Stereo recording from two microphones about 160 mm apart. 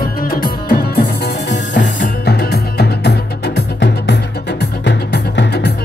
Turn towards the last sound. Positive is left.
turn(degrees=90)